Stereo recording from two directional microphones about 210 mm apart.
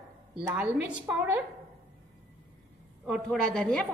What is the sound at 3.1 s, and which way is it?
Speech, 5° left (ahead or behind).